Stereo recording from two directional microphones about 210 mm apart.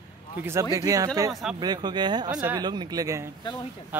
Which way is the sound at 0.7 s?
15° right (ahead or behind).